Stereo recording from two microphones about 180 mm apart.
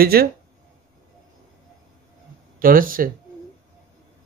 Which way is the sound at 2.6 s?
50° right (ahead or behind).